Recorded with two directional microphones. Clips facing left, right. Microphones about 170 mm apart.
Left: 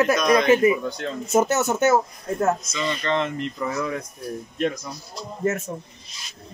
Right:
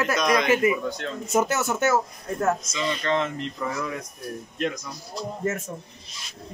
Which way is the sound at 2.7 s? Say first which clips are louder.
Left 1 dB; 5° right (ahead or behind).